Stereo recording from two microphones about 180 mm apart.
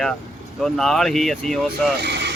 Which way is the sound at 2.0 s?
70° right (ahead or behind).